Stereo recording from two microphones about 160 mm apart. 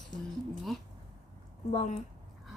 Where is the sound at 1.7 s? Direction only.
45° left (ahead or behind).